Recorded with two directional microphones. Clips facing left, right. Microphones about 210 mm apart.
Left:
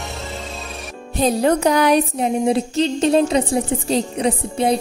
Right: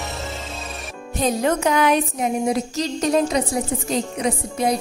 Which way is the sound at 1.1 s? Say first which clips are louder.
Left 4 dB; 35° left (ahead or behind).